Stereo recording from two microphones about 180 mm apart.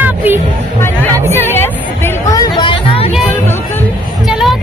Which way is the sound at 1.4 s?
10° left (ahead or behind).